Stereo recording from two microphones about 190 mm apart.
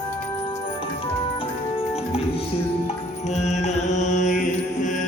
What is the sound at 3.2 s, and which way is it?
Music, 35° left (ahead or behind).